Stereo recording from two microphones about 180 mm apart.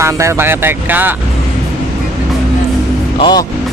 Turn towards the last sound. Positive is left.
turn(degrees=20)  # may be behind; listen again after turning